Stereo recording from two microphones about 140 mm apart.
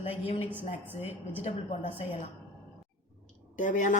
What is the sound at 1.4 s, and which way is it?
Speech, 45° left (ahead or behind).